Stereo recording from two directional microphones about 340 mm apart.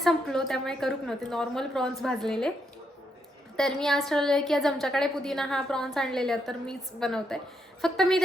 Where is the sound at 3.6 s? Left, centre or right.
Centre.